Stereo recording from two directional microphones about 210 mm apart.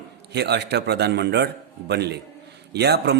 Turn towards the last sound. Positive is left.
turn(degrees=-50)  # may be behind; listen again after turning